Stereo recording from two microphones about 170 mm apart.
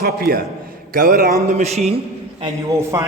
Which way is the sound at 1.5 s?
40° right (ahead or behind).